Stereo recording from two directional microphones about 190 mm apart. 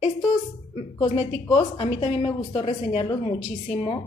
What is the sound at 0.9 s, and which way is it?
A woman's voice, 30° left (ahead or behind).